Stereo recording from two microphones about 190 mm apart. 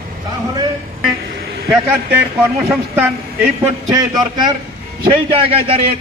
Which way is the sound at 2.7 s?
10° right (ahead or behind).